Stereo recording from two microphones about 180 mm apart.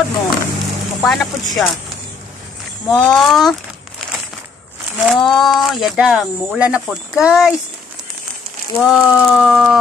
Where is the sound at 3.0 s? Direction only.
Centre (ahead or behind).